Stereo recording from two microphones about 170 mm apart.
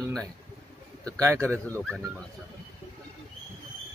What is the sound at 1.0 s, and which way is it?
Speech, 20° right (ahead or behind).